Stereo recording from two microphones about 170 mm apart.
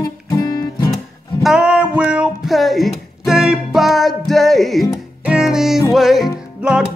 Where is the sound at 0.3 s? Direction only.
20° left (ahead or behind).